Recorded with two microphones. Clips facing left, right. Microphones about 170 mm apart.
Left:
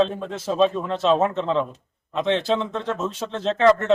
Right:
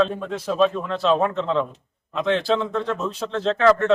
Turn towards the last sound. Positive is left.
turn(degrees=20)  # may be behind; listen again after turning